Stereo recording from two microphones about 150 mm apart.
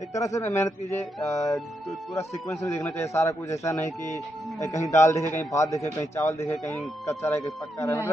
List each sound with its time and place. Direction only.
0.1 s a man's voice: 20° left (ahead or behind)